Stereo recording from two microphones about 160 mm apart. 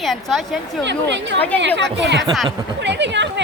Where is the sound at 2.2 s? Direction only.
Centre (ahead or behind).